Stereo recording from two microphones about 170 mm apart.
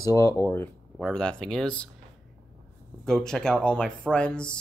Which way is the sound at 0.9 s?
5° left (ahead or behind).